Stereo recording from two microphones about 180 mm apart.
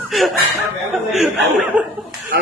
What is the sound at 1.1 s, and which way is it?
Speech, 5° right (ahead or behind).